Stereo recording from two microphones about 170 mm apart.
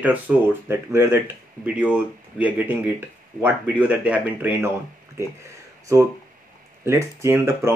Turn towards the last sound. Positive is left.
turn(degrees=-15)  # may be behind; listen again after turning